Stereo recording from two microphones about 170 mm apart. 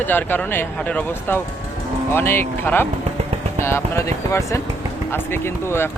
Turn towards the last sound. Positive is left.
turn(degrees=15)  # may be behind; listen again after turning